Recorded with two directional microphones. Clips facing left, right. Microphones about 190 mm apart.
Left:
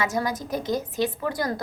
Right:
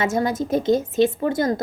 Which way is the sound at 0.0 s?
25° right (ahead or behind).